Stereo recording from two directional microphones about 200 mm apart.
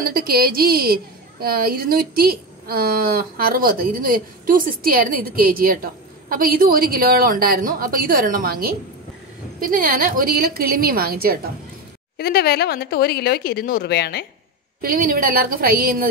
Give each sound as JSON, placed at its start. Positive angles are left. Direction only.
{"t": 0.0, "sound": "a woman's voice", "side_deg": -45}
{"t": 12.2, "sound": "speech", "side_deg": 50}
{"t": 14.8, "sound": "a woman's voice", "side_deg": -45}